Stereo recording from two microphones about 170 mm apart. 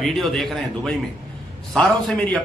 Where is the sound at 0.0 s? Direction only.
Centre (ahead or behind).